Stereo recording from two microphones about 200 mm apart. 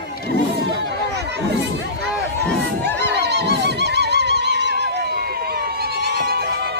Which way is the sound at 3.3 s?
60° right (ahead or behind).